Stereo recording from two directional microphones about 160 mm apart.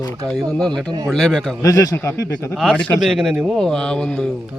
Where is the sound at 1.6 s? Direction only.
20° left (ahead or behind).